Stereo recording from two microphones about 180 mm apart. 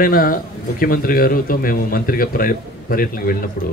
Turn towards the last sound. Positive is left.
turn(degrees=55)  # may be behind; listen again after turning